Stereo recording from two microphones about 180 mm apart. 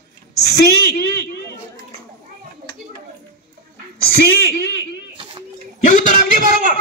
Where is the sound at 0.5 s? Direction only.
60° left (ahead or behind).